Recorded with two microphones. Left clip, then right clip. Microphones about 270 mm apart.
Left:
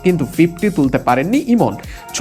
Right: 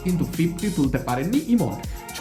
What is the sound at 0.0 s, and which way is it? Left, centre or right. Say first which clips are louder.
Speech: left 12 dB; centre.